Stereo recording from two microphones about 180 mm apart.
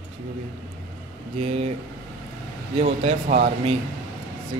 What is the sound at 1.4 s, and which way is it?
Speech, 35° right (ahead or behind).